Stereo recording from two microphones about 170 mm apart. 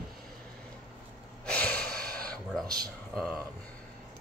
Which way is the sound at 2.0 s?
60° right (ahead or behind).